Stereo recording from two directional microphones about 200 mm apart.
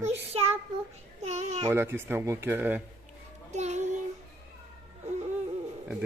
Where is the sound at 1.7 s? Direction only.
10° right (ahead or behind).